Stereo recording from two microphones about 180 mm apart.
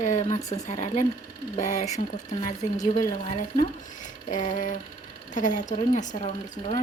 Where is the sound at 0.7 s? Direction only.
40° left (ahead or behind).